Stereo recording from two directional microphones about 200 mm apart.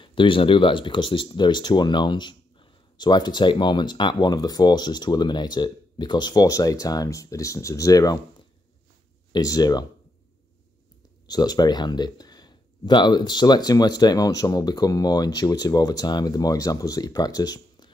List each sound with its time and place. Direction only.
0.0 s speech: 25° left (ahead or behind)
9.3 s speech: 20° left (ahead or behind)
11.2 s speech: 20° left (ahead or behind)